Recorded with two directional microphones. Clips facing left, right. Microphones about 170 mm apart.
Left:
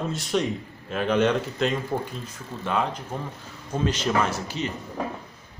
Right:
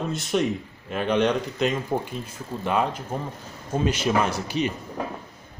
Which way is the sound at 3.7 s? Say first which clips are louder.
Right 2 dB; 10° right (ahead or behind).